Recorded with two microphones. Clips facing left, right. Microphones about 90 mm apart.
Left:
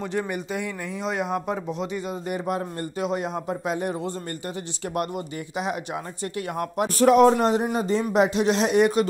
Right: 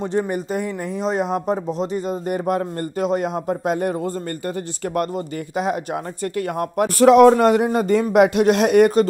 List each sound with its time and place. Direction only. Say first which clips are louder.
0.0 s speech: right 6 dB; 30° right (ahead or behind); by 6.9 s 50° right (ahead or behind)
7.0 s speech: right 5 dB; 85° right; by 9.0 s 50° right (ahead or behind)